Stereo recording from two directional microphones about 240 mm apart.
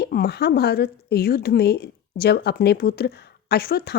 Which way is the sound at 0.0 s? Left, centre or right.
Left.